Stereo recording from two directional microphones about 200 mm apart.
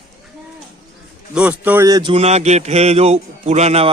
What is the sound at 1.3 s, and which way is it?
Speech, 5° right (ahead or behind).